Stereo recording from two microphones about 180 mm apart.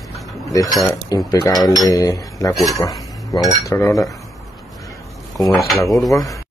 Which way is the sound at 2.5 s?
Centre (ahead or behind).